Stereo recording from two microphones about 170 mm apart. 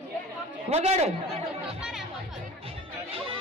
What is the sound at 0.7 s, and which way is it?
Speech, 40° right (ahead or behind).